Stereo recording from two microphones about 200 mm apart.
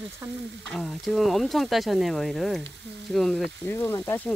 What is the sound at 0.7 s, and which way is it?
Speech, centre (ahead or behind).